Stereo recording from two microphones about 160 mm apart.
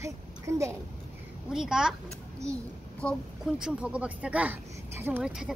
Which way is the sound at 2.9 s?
5° left (ahead or behind).